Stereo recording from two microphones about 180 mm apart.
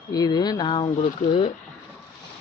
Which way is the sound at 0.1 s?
20° left (ahead or behind).